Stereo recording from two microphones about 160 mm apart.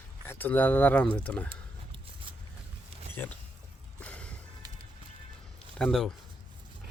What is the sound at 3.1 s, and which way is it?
Speech, 15° left (ahead or behind).